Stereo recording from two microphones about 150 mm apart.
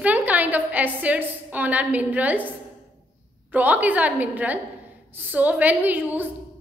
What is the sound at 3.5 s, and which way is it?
A woman's voice, 10° right (ahead or behind).